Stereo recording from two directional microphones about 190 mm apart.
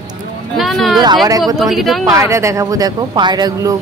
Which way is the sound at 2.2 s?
15° right (ahead or behind).